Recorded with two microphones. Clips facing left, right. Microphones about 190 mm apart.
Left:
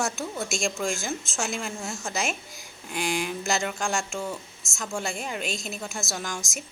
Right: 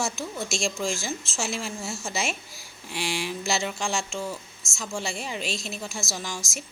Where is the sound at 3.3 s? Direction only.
Centre (ahead or behind).